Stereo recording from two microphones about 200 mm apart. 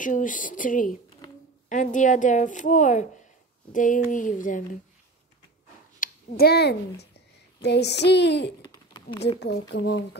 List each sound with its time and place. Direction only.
0.0 s a woman's voice: 40° left (ahead or behind)
5.9 s speech: 50° left (ahead or behind)